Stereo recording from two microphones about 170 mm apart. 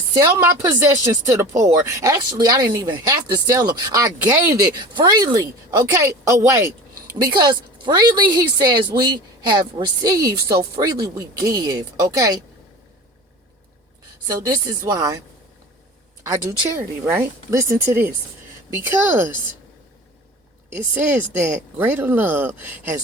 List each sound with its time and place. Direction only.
0.4 s a woman's voice: 15° right (ahead or behind)
14.3 s a woman's voice: 20° right (ahead or behind)
16.2 s speech: 15° right (ahead or behind)
20.7 s speech: 10° right (ahead or behind)